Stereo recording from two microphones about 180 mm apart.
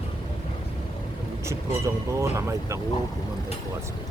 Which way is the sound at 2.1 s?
15° right (ahead or behind).